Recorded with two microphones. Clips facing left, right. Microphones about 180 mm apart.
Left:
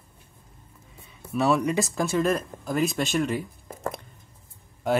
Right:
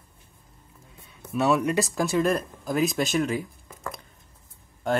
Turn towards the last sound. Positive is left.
turn(degrees=5)  # may be behind; listen again after turning